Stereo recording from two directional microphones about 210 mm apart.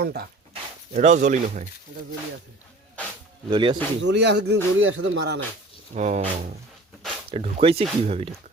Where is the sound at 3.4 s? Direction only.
20° right (ahead or behind).